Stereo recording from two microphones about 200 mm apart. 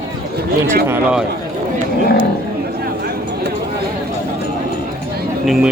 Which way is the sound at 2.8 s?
50° right (ahead or behind).